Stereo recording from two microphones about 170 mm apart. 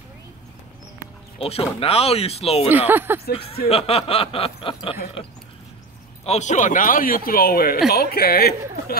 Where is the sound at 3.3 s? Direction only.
35° left (ahead or behind).